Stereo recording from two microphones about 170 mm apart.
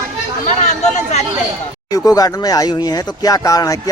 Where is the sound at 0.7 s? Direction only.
45° left (ahead or behind).